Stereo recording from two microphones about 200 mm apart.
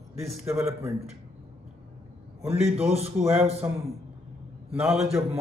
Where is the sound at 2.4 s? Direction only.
30° right (ahead or behind).